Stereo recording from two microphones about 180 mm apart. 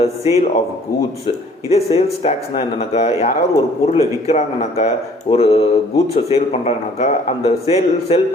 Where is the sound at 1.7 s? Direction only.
35° left (ahead or behind).